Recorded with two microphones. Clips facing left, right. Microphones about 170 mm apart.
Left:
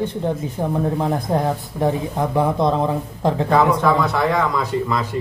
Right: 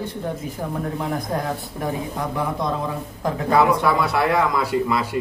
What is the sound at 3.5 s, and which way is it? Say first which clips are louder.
Speech: left 1 dB; 10° right (ahead or behind).